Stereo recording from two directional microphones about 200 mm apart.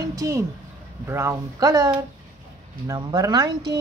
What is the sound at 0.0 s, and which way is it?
A woman's voice, 15° right (ahead or behind).